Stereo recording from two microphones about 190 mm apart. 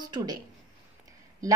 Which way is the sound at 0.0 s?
20° right (ahead or behind).